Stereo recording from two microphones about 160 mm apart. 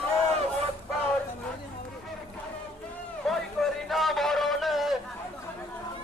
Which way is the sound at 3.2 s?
Centre (ahead or behind).